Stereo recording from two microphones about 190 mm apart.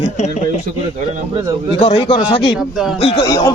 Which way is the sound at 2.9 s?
30° left (ahead or behind).